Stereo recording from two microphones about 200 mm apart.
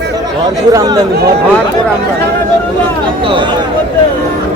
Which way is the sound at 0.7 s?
15° right (ahead or behind).